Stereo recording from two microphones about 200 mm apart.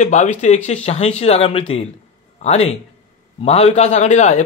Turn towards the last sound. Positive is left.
turn(degrees=35)  # may be behind; listen again after turning